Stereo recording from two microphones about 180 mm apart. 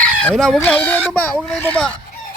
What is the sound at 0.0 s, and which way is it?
Chicken, 5° left (ahead or behind).